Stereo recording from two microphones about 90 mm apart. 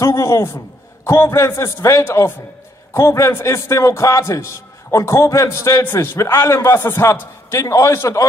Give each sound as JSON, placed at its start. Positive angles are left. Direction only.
{"t": 0.0, "sound": "a man's voice", "side_deg": 35}